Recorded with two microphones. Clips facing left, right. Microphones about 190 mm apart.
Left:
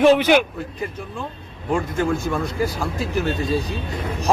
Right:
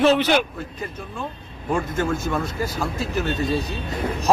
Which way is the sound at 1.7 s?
15° left (ahead or behind).